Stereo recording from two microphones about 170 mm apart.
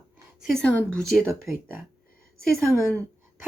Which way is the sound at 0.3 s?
Centre (ahead or behind).